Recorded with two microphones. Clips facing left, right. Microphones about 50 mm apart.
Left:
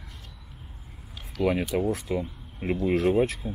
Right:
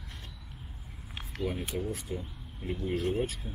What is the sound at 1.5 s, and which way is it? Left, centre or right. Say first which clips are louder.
Speech: left 11 dB; left.